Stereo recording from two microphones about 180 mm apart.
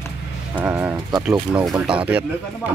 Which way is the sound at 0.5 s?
10° right (ahead or behind).